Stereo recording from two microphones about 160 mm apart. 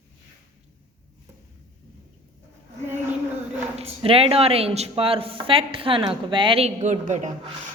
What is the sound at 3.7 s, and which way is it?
Speech, 35° right (ahead or behind).